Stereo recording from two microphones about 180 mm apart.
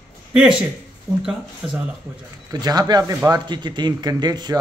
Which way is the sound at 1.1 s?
Centre (ahead or behind).